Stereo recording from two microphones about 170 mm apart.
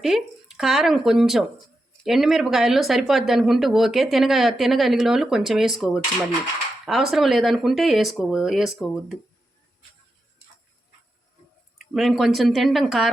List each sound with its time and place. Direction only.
0.0 s speech: centre (ahead or behind)
11.9 s speech: centre (ahead or behind)